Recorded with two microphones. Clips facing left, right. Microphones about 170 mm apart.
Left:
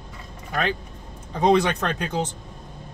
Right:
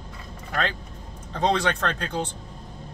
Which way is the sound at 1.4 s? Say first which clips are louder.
Left 4 dB; 15° left (ahead or behind).